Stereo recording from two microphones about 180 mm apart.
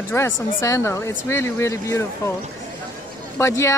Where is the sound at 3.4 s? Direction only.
15° left (ahead or behind).